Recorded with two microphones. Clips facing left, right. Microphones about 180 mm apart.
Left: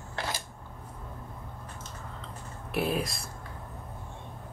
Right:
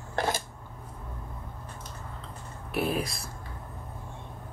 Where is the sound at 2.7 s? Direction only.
Centre (ahead or behind).